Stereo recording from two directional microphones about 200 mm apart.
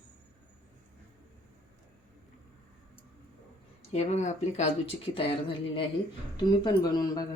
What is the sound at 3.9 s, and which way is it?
Speech, 35° left (ahead or behind).